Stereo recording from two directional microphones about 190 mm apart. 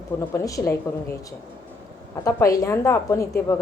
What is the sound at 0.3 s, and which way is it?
Speech, 15° left (ahead or behind).